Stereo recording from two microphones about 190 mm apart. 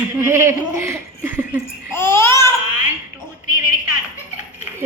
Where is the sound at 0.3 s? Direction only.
15° right (ahead or behind).